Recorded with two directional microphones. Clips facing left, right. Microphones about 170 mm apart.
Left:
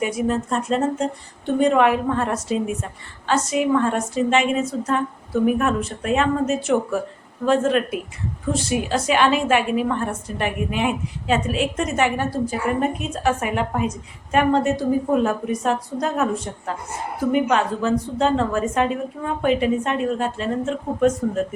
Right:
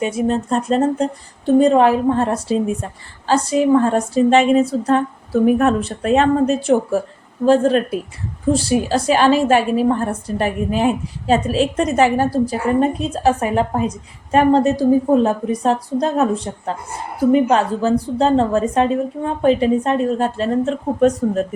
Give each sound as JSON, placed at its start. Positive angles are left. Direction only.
{"t": 0.0, "sound": "a woman's voice", "side_deg": -25}